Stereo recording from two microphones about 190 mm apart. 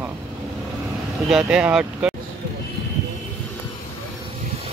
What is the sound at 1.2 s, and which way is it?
Speech, 5° right (ahead or behind).